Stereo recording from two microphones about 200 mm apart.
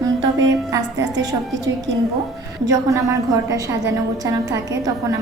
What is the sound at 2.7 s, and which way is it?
A woman's voice, 15° right (ahead or behind).